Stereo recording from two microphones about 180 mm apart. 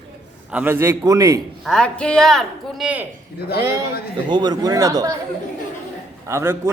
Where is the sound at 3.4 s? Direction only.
60° left (ahead or behind).